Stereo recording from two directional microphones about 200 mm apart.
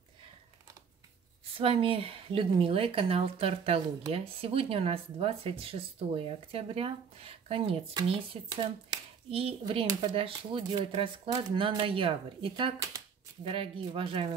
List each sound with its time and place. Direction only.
1.6 s speech: 25° right (ahead or behind)